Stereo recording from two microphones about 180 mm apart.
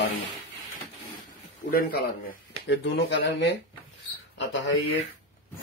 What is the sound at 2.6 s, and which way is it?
Speech, 85° left.